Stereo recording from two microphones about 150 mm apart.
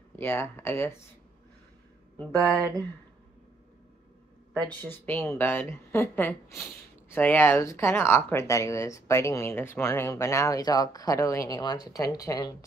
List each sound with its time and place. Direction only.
0.1 s speech: 15° left (ahead or behind)
2.3 s speech: 20° right (ahead or behind)
4.6 s speech: 15° left (ahead or behind)